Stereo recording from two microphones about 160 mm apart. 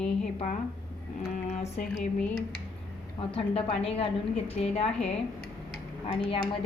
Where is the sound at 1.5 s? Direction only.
40° left (ahead or behind).